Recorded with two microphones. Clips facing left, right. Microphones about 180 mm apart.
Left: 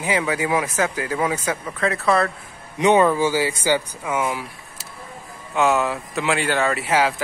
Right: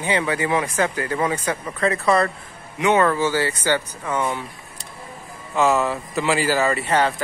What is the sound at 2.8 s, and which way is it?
Speech, 15° left (ahead or behind).